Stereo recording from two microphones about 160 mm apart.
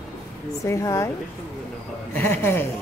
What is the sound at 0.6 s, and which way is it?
Speech, 20° left (ahead or behind).